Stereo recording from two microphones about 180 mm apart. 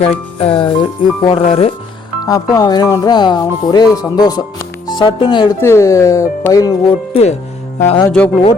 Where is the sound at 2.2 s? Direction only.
20° left (ahead or behind).